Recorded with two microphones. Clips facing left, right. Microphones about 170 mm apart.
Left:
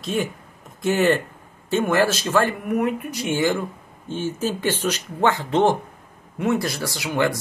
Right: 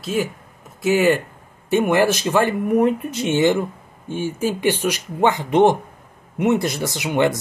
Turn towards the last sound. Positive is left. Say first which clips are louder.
# right 3 dB
turn(degrees=-20)  # may be behind; listen again after turning